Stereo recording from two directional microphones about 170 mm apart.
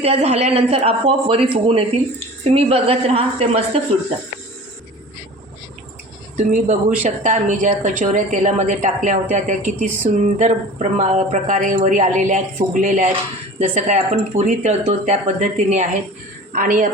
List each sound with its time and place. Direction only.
0.0 s speech: 40° right (ahead or behind)
6.3 s a woman's voice: 45° right (ahead or behind)